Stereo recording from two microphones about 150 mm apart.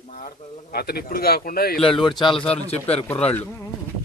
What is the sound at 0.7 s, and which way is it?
A man's voice, 90° left.